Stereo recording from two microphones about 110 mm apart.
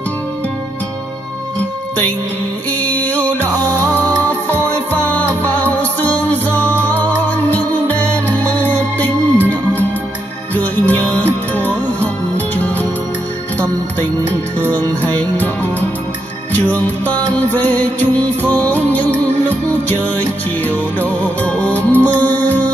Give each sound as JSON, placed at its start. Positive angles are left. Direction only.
{"t": 2.8, "sound": "music", "side_deg": 15}
{"t": 14.7, "sound": "music", "side_deg": 15}